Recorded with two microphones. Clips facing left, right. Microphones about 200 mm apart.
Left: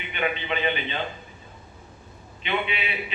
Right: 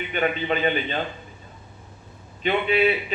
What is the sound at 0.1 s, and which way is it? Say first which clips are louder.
Speech: right 3 dB; 45° right (ahead or behind).